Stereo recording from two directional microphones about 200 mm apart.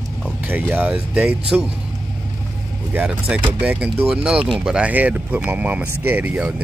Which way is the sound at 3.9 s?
30° right (ahead or behind).